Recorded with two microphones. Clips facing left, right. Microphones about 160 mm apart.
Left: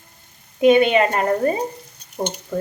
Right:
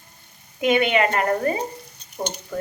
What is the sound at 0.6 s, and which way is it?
Speech, 30° left (ahead or behind).